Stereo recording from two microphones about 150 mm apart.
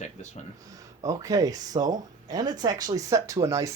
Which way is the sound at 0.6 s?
20° right (ahead or behind).